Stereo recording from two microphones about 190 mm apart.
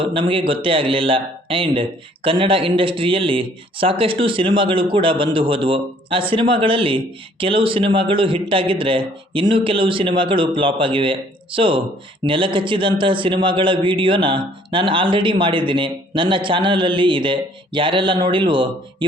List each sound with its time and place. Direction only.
0.0 s a man's voice: 25° right (ahead or behind)